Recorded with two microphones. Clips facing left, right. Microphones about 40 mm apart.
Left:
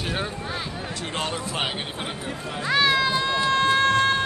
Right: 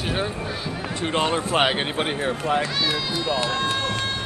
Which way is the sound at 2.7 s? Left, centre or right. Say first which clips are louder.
Left 5 dB; left.